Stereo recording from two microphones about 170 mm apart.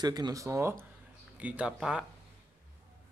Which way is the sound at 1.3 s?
5° right (ahead or behind).